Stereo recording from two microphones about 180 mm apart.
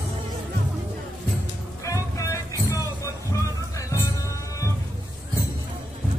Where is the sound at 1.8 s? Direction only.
20° left (ahead or behind).